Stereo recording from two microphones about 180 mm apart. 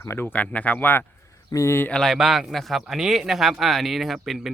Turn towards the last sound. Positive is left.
turn(degrees=0)  # may be behind; listen again after turning